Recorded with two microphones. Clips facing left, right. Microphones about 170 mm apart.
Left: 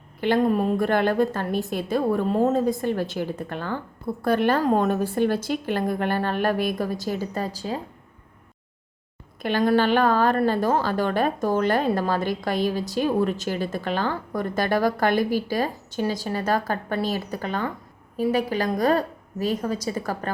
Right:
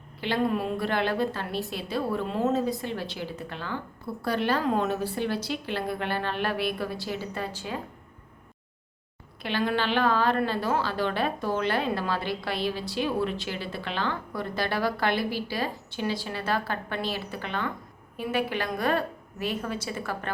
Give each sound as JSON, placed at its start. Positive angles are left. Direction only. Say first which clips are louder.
{"t": 0.2, "sound": "a woman's voice", "louder": "left 6 dB", "side_deg": 50}
{"t": 9.4, "sound": "a woman's voice", "louder": "left 7 dB", "side_deg": 45}